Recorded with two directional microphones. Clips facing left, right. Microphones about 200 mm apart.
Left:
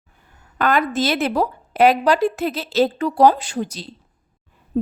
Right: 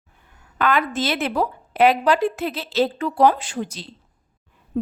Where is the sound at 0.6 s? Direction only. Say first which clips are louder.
Left 2 dB; 40° left (ahead or behind).